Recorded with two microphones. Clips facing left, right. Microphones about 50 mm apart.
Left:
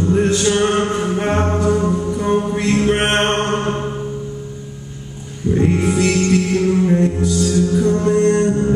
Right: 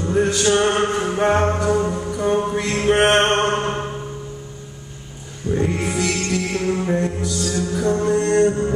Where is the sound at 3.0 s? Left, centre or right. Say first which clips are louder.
Right 1 dB; centre.